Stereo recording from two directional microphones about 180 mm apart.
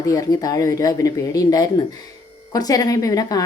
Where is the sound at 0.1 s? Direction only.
20° left (ahead or behind).